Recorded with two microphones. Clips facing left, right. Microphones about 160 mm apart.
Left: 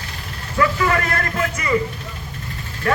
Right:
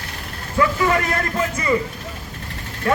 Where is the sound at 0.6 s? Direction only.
20° right (ahead or behind).